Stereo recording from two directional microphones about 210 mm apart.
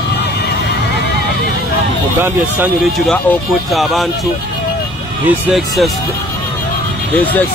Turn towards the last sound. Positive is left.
turn(degrees=-5)  # may be behind; listen again after turning